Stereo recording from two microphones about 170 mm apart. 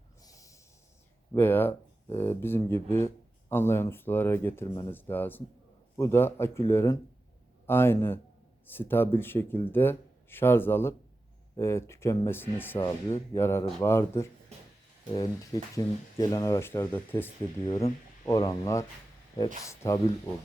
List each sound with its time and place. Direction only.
0.2 s snort: 20° left (ahead or behind)
1.3 s speech: 10° left (ahead or behind)